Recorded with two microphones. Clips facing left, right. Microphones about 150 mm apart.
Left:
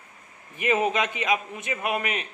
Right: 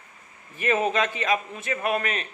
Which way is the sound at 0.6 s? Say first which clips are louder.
Even; 15° left (ahead or behind).